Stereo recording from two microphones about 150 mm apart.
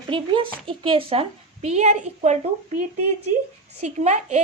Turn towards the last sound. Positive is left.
turn(degrees=-50)  # may be behind; listen again after turning